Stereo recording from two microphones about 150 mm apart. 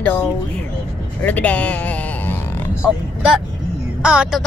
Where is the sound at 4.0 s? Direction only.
5° right (ahead or behind).